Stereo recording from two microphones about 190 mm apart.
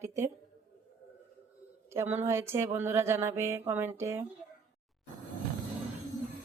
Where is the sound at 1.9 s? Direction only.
10° right (ahead or behind).